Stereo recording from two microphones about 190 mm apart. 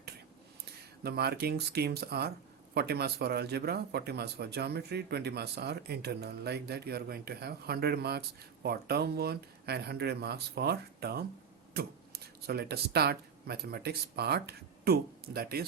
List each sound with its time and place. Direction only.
1.0 s speech: 55° right (ahead or behind)